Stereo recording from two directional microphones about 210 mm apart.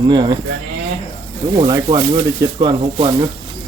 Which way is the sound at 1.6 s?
20° right (ahead or behind).